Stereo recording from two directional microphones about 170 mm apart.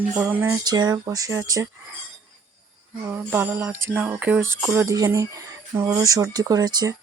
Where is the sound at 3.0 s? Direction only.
10° right (ahead or behind).